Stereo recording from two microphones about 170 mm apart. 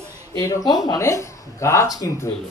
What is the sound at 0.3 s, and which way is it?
A man's voice, 20° left (ahead or behind).